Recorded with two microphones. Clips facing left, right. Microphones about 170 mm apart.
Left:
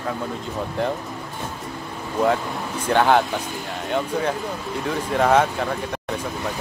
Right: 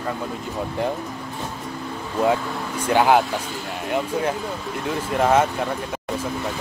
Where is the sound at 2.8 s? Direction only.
10° right (ahead or behind).